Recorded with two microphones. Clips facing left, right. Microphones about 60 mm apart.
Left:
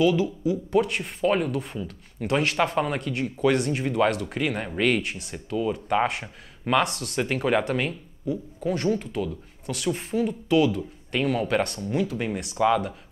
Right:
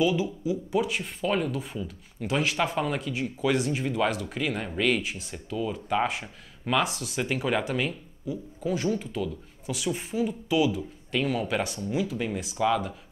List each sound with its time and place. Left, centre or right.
0.0 s speech: centre
1.2 s speech: centre
1.5 s speech: centre
6.2 s speech: centre
6.8 s speech: centre
12.5 s speech: centre